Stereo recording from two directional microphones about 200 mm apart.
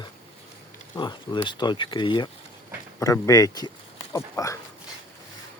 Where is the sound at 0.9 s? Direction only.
25° left (ahead or behind).